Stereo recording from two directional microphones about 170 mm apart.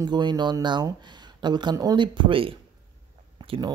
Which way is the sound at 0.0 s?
25° right (ahead or behind).